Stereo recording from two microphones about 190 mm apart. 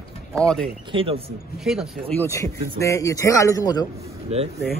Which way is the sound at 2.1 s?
15° left (ahead or behind).